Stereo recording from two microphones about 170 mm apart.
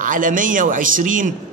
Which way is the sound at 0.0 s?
50° right (ahead or behind).